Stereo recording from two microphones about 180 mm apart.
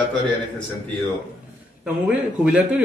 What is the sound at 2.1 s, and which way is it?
Speech, 5° right (ahead or behind).